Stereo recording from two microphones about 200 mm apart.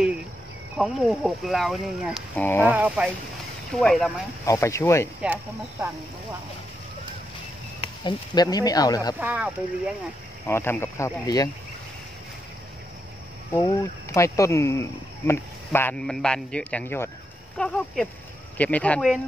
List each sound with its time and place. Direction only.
0.7 s speech: centre (ahead or behind)
4.5 s speech: 15° left (ahead or behind)
5.2 s speech: 10° right (ahead or behind)
8.0 s speech: 20° left (ahead or behind)
9.2 s speech: 5° right (ahead or behind)
10.4 s speech: 10° left (ahead or behind)
13.5 s speech: 15° left (ahead or behind); by 19.2 s centre (ahead or behind)